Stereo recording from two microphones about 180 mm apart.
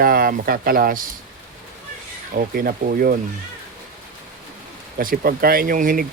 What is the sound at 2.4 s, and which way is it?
Speech, 55° right (ahead or behind).